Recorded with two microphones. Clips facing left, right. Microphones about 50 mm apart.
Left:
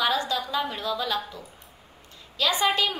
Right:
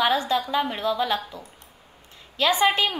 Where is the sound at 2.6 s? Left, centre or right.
Right.